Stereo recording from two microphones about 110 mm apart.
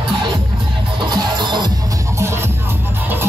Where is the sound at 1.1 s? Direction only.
40° right (ahead or behind).